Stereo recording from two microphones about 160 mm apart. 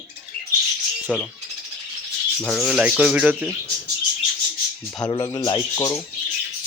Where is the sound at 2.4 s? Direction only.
5° left (ahead or behind).